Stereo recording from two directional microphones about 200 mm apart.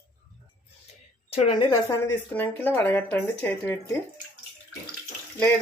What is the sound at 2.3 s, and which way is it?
Speech, 10° left (ahead or behind).